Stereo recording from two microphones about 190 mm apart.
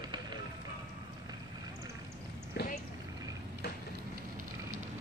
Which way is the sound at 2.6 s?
60° left (ahead or behind).